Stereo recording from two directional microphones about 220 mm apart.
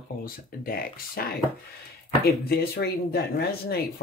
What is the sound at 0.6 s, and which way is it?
Speech, 40° left (ahead or behind).